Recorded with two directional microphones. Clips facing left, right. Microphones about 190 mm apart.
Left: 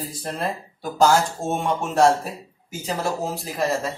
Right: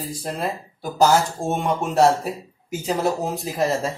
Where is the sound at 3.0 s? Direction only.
20° right (ahead or behind).